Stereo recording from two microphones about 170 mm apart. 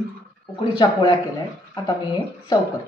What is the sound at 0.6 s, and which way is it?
Speech, 25° left (ahead or behind).